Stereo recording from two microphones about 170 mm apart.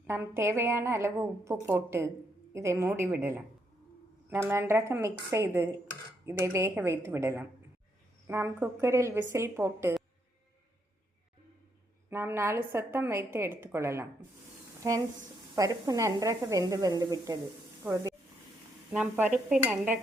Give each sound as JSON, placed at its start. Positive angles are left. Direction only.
{"t": 0.1, "sound": "a woman's voice", "side_deg": -15}
{"t": 12.1, "sound": "a woman's voice", "side_deg": -15}
{"t": 17.8, "sound": "a woman's voice", "side_deg": -10}